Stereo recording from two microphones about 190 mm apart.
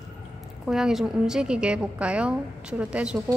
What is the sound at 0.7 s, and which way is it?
A woman's voice, centre (ahead or behind).